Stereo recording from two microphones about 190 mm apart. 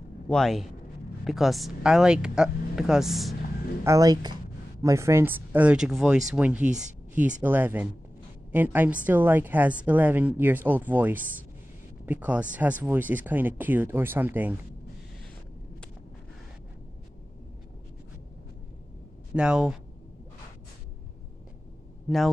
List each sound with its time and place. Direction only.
0.3 s speech: centre (ahead or behind)
3.8 s a woman's voice: 15° right (ahead or behind)
19.3 s speech: 5° right (ahead or behind)